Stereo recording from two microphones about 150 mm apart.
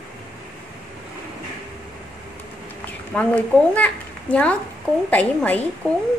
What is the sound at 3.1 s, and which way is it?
A child's voice, 10° left (ahead or behind).